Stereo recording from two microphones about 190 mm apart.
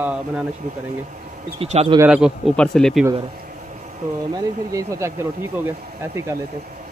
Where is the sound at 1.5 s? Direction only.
30° right (ahead or behind).